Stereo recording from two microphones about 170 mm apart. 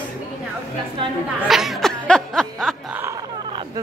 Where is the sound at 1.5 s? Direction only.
Centre (ahead or behind).